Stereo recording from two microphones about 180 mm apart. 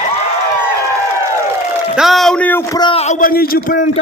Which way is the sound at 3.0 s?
45° left (ahead or behind).